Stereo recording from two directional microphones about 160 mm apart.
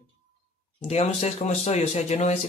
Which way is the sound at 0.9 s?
40° left (ahead or behind).